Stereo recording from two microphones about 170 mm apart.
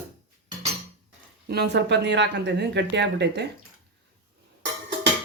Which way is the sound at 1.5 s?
80° right.